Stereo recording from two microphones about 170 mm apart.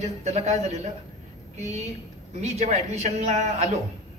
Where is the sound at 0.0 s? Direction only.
40° right (ahead or behind).